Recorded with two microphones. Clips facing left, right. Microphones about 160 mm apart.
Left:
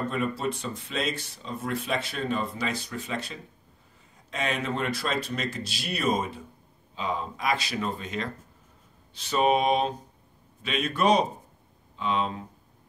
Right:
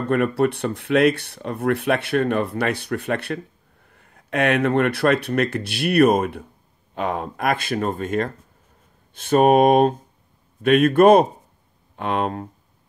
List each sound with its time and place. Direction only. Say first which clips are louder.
0.1 s speech: right 10 dB; 65° right (ahead or behind)